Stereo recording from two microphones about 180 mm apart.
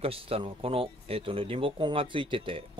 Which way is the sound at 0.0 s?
30° right (ahead or behind).